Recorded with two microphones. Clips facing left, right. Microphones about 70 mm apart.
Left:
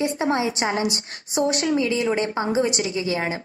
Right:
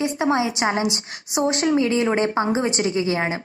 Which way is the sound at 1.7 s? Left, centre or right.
Right.